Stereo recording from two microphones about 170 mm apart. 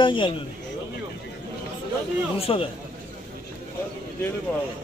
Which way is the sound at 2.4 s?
35° left (ahead or behind).